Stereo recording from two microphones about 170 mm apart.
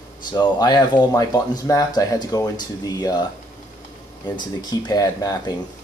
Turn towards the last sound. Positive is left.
turn(degrees=20)  # may be behind; listen again after turning